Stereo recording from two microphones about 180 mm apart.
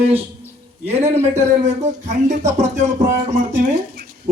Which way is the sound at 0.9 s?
35° right (ahead or behind).